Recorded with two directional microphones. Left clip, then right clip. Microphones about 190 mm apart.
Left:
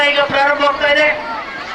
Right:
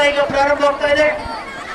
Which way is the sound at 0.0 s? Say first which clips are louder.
Left 2 dB; 5° right (ahead or behind).